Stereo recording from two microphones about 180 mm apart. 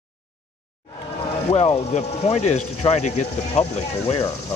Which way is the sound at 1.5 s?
35° left (ahead or behind).